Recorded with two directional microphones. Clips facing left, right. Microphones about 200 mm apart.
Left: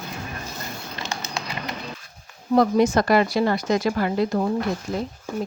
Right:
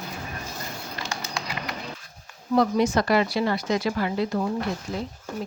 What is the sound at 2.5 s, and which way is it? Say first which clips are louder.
Speech: left 3 dB; 45° left (ahead or behind).